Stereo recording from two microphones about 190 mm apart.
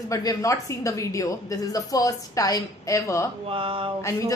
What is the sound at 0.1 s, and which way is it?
A woman's voice, 15° left (ahead or behind).